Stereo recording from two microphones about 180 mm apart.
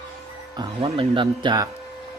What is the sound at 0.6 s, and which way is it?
Speech, 30° right (ahead or behind).